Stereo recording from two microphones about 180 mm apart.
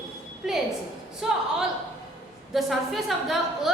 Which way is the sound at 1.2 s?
Centre (ahead or behind).